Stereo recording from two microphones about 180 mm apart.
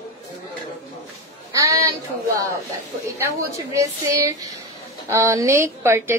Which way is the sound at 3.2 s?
15° right (ahead or behind).